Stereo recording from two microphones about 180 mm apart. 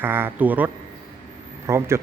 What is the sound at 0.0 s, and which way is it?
Speech, 10° right (ahead or behind).